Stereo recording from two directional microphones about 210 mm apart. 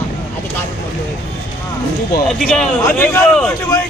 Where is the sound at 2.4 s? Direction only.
5° left (ahead or behind).